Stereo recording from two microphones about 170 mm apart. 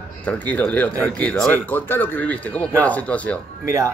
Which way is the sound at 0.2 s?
10° left (ahead or behind).